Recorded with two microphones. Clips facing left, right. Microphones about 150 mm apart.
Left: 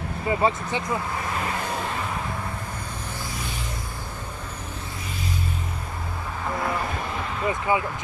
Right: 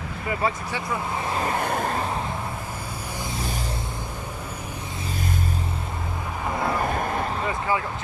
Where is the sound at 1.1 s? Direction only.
25° right (ahead or behind).